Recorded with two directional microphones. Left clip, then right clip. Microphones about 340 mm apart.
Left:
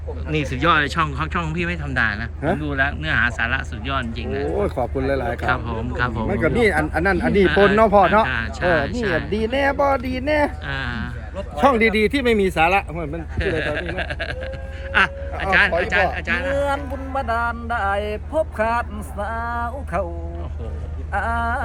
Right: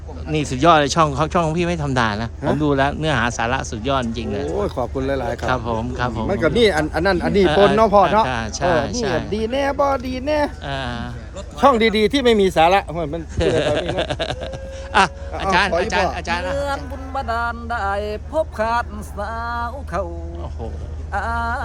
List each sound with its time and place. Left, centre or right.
0.3 s speech: centre
11.6 s speech: right
21.1 s speech: centre